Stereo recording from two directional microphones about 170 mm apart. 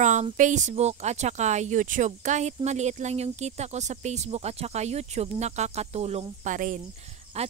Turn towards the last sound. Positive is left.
turn(degrees=-40)  # may be behind; listen again after turning